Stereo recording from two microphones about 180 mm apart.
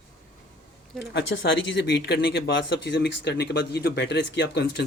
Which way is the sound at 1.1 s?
90° left.